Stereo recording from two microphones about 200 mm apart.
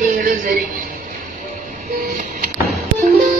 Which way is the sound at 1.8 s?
40° right (ahead or behind).